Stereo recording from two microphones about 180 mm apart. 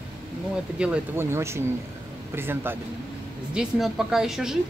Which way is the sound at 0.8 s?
10° right (ahead or behind).